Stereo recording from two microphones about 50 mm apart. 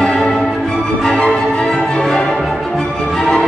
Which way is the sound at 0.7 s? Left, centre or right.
Centre.